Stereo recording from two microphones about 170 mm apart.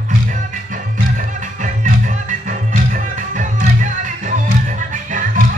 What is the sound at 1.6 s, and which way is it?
Music, 50° right (ahead or behind).